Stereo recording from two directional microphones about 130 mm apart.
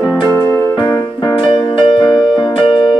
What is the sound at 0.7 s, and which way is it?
Music, 40° left (ahead or behind).